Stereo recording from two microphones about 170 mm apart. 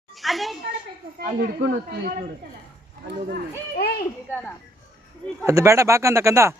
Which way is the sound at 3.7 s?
65° left (ahead or behind).